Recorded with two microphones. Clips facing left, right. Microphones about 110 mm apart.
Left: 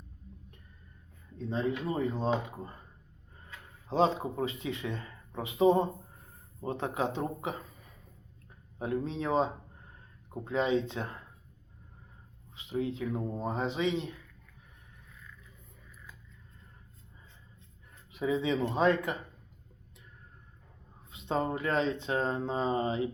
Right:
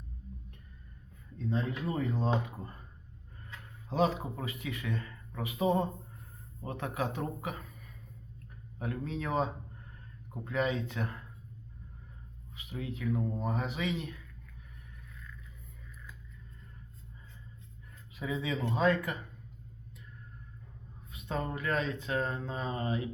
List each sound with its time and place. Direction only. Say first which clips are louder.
1.5 s speech: left 2 dB; 25° left (ahead or behind)
3.8 s speech: left 3 dB; 25° left (ahead or behind)
12.5 s speech: left 7 dB; 25° left (ahead or behind)
18.1 s speech: left 5 dB; 25° left (ahead or behind)
21.1 s speech: left 5 dB; 25° left (ahead or behind)